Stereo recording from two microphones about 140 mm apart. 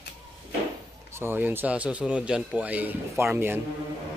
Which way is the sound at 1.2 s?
15° right (ahead or behind).